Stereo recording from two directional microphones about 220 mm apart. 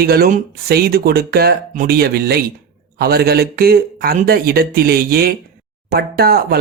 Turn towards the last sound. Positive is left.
turn(degrees=-45)  # may be behind; listen again after turning